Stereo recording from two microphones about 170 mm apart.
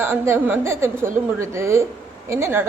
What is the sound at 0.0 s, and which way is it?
A woman's voice, 10° right (ahead or behind).